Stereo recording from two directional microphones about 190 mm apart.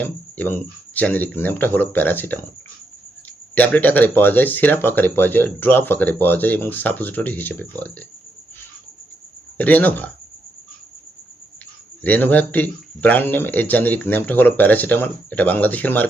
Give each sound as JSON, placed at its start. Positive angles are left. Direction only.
{"t": 0.0, "sound": "speech", "side_deg": 10}
{"t": 3.5, "sound": "speech", "side_deg": 10}
{"t": 9.6, "sound": "speech", "side_deg": 10}
{"t": 12.0, "sound": "speech", "side_deg": 10}